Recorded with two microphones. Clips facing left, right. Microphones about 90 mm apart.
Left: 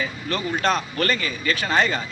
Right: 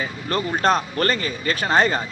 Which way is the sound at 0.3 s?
40° right (ahead or behind).